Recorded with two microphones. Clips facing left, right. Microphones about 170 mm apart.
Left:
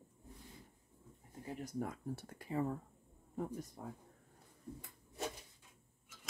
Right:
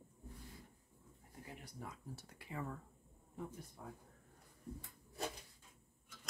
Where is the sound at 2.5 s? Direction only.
35° left (ahead or behind).